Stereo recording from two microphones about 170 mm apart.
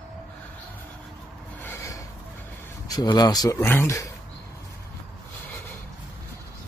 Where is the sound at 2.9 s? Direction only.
25° left (ahead or behind).